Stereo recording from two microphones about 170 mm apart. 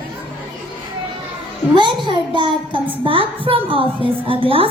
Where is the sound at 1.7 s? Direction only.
30° right (ahead or behind).